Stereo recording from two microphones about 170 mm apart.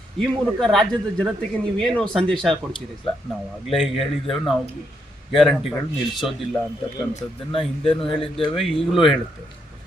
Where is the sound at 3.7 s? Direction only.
Centre (ahead or behind).